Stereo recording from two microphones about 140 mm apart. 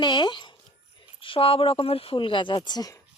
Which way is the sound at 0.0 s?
30° left (ahead or behind).